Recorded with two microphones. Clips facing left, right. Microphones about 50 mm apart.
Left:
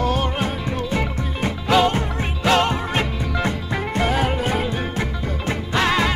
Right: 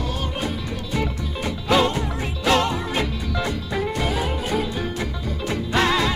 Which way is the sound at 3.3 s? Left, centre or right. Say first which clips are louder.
Left 2 dB; left.